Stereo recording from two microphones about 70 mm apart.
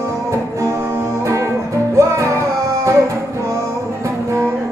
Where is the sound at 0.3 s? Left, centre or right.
Right.